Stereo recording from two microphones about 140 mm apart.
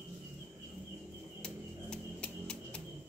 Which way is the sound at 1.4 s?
5° left (ahead or behind).